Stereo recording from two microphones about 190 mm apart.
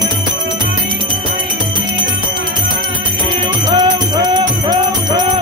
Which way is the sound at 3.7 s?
20° right (ahead or behind).